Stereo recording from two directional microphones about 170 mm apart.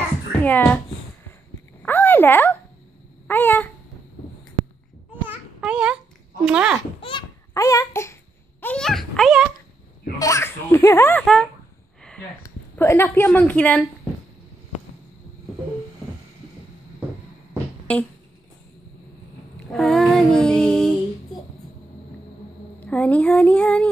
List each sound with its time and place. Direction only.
0.4 s a child's voice: 10° left (ahead or behind)
1.8 s a sound: 10° left (ahead or behind)
3.3 s speech: 10° left (ahead or behind)
5.3 s a sound: 5° right (ahead or behind)
6.4 s a child's voice: 5° right (ahead or behind)
7.0 s a sound: 30° left (ahead or behind)
7.5 s speech: 20° left (ahead or behind); by 9.5 s centre (ahead or behind)
10.1 s speech: 20° left (ahead or behind)
12.4 s speech: 15° left (ahead or behind)
17.9 s speech: 10° left (ahead or behind)
19.7 s child singing: centre (ahead or behind)
22.8 s speech: 10° left (ahead or behind)